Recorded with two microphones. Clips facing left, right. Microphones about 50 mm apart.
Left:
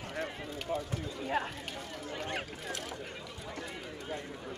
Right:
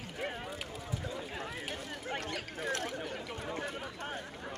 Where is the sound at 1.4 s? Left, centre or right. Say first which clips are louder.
Left 7 dB; left.